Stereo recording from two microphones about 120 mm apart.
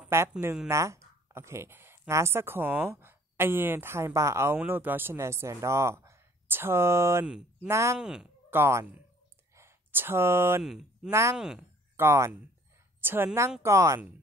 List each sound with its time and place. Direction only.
0.1 s speech: 20° right (ahead or behind)
8.0 s speech: 5° right (ahead or behind)
8.5 s speech: 20° right (ahead or behind)
10.6 s speech: 5° right (ahead or behind)
11.1 s speech: 25° right (ahead or behind)
11.3 s speech: 5° right (ahead or behind)
12.0 s speech: 20° right (ahead or behind)